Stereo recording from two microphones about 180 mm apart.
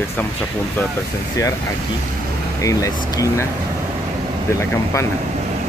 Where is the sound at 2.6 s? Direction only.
20° left (ahead or behind).